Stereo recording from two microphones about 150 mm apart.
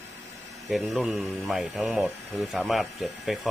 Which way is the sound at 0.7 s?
Centre (ahead or behind).